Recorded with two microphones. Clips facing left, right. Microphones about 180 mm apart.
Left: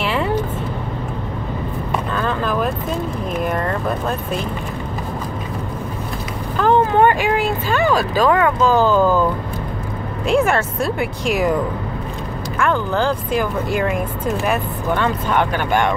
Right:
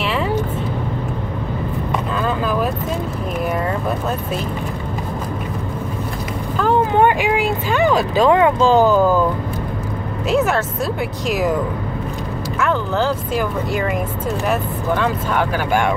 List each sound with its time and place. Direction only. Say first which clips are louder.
0.0 s vehicle: even; centre (ahead or behind)
2.2 s vehicle: right 1 dB; 5° right (ahead or behind)
6.6 s speech: left 1 dB; 10° right (ahead or behind)
8.8 s speech: right 1 dB; 10° right (ahead or behind)
10.2 s speech: left 1 dB; centre (ahead or behind)
12.5 s speech: left 1 dB; 5° right (ahead or behind)